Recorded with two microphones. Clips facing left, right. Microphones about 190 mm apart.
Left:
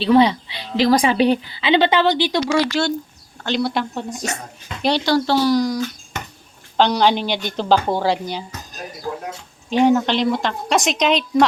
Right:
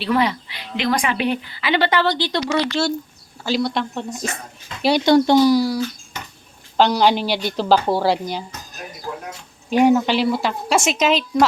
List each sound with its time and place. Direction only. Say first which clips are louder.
0.0 s speech: left 6 dB; 25° left (ahead or behind)
1.7 s speech: left 3 dB; 20° left (ahead or behind)
3.4 s a woman's voice: even; centre (ahead or behind)
4.8 s a woman's voice: right 3 dB; 10° right (ahead or behind)
9.6 s a woman's voice: right 1 dB; 10° right (ahead or behind)